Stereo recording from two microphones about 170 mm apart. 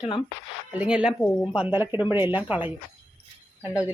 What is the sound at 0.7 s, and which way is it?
A woman's voice, 5° right (ahead or behind).